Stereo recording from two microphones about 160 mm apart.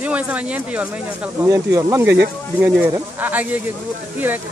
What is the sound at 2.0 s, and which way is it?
Speech, 90° right.